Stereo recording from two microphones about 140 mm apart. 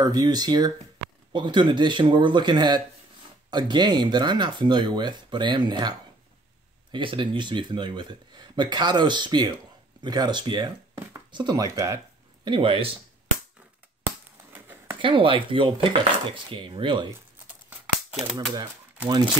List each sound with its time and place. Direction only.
0.0 s speech: 25° right (ahead or behind)
12.4 s speech: 35° right (ahead or behind)
14.0 s chop: 15° right (ahead or behind)
15.0 s speech: 40° right (ahead or behind)
19.0 s speech: 30° right (ahead or behind)